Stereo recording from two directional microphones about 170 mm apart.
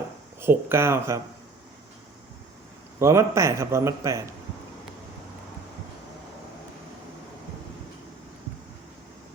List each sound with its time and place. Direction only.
0.4 s speech: 15° right (ahead or behind)
3.0 s speech: 15° right (ahead or behind)